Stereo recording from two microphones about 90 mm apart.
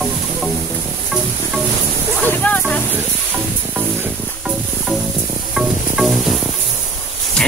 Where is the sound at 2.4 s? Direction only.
20° left (ahead or behind).